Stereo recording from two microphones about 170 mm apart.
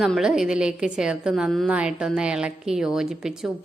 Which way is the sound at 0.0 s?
5° right (ahead or behind).